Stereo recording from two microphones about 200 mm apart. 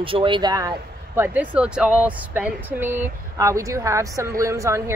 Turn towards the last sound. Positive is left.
turn(degrees=-15)  # may be behind; listen again after turning